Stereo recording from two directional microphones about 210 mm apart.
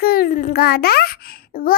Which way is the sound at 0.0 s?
45° left (ahead or behind).